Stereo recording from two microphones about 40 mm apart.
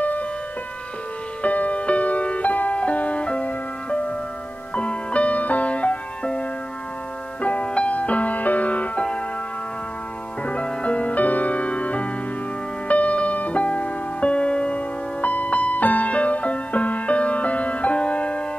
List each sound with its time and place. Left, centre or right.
1.4 s music: left
4.7 s music: left
7.4 s music: left
10.4 s music: left
15.2 s music: left